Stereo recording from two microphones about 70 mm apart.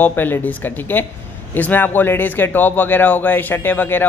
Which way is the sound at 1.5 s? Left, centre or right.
Left.